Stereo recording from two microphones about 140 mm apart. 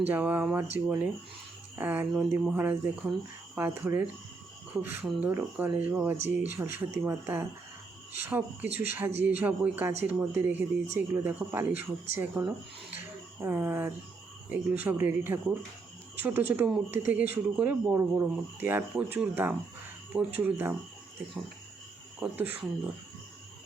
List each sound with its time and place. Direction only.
0.0 s speech: 10° right (ahead or behind)
13.4 s speech: 15° right (ahead or behind)
22.2 s speech: 15° right (ahead or behind)